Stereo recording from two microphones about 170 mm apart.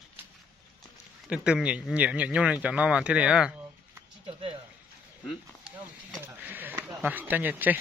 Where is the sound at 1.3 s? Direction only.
5° right (ahead or behind).